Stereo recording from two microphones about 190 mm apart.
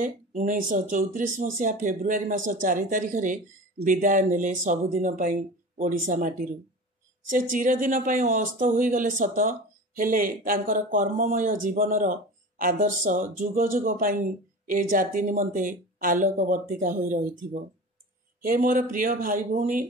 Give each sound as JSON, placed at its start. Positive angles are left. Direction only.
{"t": 0.0, "sound": "speech", "side_deg": -40}